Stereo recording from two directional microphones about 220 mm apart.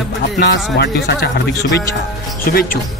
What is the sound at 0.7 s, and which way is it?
A man's voice, 45° left (ahead or behind).